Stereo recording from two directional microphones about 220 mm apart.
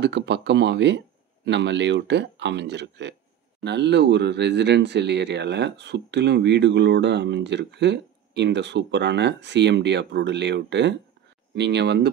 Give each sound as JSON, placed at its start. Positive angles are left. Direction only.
{"t": 0.0, "sound": "speech", "side_deg": -50}